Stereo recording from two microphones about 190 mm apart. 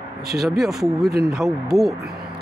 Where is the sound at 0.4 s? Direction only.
Centre (ahead or behind).